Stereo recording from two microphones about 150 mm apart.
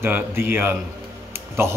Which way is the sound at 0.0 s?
15° right (ahead or behind).